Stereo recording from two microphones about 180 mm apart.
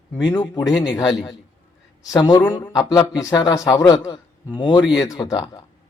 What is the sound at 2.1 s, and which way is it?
Speech, 25° left (ahead or behind).